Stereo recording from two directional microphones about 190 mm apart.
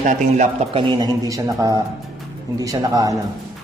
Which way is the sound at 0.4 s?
25° right (ahead or behind).